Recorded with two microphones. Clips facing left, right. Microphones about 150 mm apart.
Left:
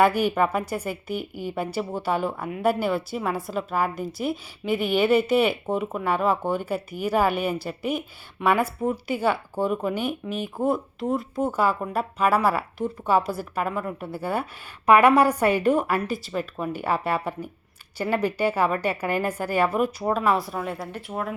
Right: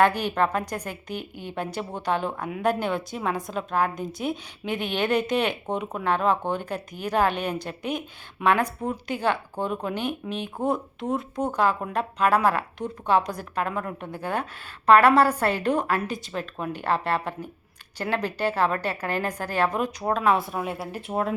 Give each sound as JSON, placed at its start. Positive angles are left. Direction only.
{"t": 0.0, "sound": "a woman's voice", "side_deg": 10}
{"t": 21.1, "sound": "speech", "side_deg": -30}